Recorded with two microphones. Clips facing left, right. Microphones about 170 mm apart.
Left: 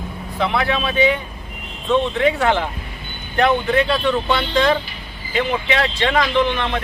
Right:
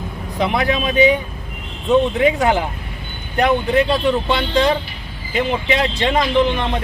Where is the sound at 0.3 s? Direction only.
15° right (ahead or behind).